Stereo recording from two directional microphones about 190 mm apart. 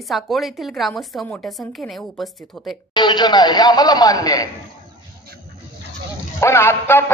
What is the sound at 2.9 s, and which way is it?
A man's voice, 25° left (ahead or behind).